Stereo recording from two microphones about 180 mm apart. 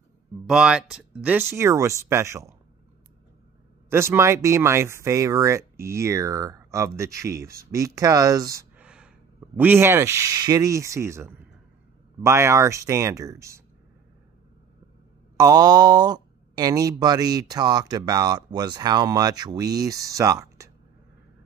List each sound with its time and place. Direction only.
0.5 s speech: 5° right (ahead or behind)
3.9 s speech: 15° right (ahead or behind)
8.7 s a sound: 5° right (ahead or behind)
9.6 s speech: 10° right (ahead or behind)
15.3 s speech: 20° right (ahead or behind)